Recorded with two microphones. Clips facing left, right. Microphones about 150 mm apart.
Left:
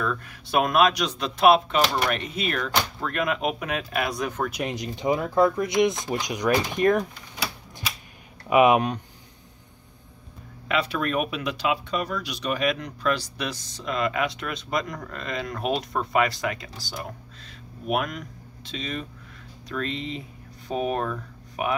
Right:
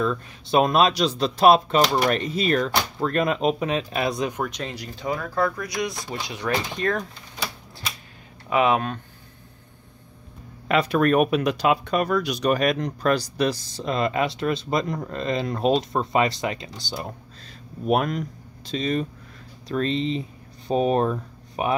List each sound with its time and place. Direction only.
0.0 s speech: 25° right (ahead or behind)
4.5 s speech: 10° left (ahead or behind)
4.7 s speech: 20° left (ahead or behind)
8.5 s speech: 15° left (ahead or behind)
10.7 s speech: 45° right (ahead or behind); by 16.7 s 25° right (ahead or behind)
17.8 s speech: 35° right (ahead or behind)